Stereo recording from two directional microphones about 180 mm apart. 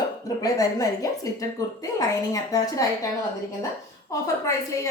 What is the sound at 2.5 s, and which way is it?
Speech, 20° left (ahead or behind).